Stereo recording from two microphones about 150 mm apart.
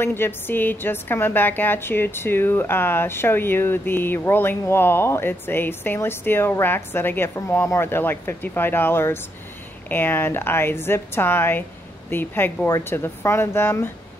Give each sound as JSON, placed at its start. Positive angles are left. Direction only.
{"t": 0.0, "sound": "a woman's voice", "side_deg": 15}